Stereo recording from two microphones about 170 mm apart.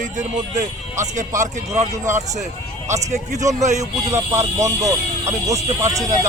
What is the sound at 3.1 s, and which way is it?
Speech, 45° right (ahead or behind).